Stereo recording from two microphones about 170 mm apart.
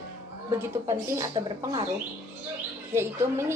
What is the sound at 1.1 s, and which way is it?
Speech, 15° right (ahead or behind).